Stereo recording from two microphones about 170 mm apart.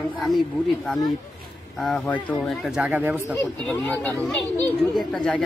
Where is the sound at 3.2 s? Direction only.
5° left (ahead or behind).